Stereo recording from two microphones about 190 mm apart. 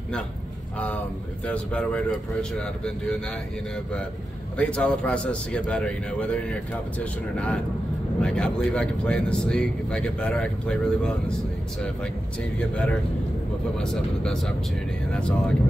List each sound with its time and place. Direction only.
1.4 s speech: 5° left (ahead or behind)
13.7 s speech: 5° left (ahead or behind)